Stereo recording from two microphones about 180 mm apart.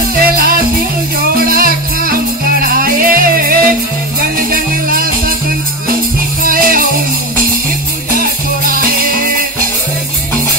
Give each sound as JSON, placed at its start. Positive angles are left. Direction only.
{"t": 0.1, "sound": "music", "side_deg": -55}
{"t": 6.4, "sound": "music", "side_deg": -50}